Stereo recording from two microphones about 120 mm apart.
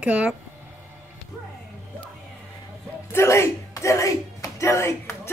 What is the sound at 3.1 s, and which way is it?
Speech, 20° left (ahead or behind).